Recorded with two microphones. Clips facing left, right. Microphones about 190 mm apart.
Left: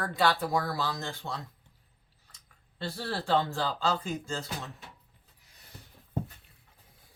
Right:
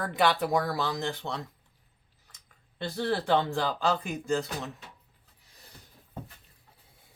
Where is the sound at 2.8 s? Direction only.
20° right (ahead or behind).